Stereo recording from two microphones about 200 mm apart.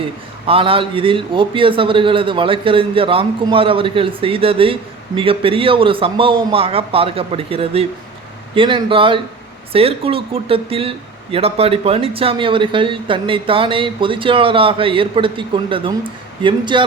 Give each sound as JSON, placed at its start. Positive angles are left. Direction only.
{"t": 0.4, "sound": "a man's voice", "side_deg": -25}